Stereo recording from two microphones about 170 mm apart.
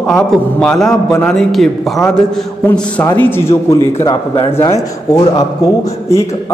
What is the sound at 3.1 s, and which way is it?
A man's voice, 10° left (ahead or behind).